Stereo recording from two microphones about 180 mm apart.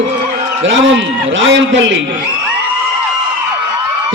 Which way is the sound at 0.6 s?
90° right.